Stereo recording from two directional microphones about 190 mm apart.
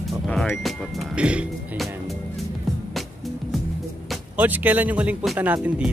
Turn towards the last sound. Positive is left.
turn(degrees=-10)  # may be behind; listen again after turning